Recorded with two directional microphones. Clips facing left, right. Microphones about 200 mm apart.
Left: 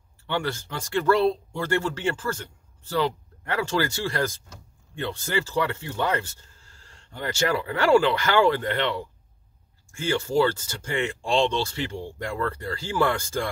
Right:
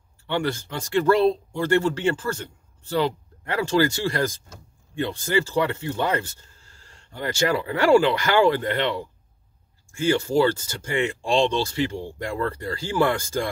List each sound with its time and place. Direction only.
0.3 s speech: 20° right (ahead or behind)
10.0 s speech: 15° right (ahead or behind)